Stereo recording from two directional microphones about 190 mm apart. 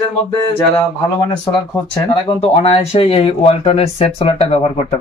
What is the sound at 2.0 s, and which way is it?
Speech, 35° left (ahead or behind).